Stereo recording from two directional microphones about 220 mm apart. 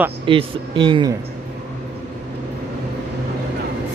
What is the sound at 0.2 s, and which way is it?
Speech, 25° right (ahead or behind).